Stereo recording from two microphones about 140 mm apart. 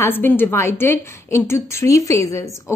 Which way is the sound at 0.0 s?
15° left (ahead or behind).